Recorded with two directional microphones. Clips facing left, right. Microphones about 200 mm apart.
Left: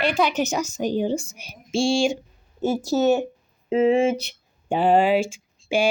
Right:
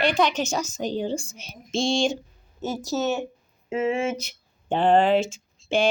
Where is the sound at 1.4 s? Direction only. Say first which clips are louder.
Left 3 dB; 10° left (ahead or behind).